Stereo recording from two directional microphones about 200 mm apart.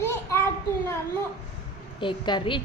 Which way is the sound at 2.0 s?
25° left (ahead or behind).